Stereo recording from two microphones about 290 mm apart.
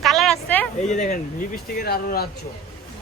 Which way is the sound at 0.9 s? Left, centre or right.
Left.